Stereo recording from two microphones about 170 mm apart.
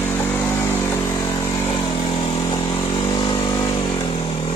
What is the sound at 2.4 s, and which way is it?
Vehicle, 20° left (ahead or behind).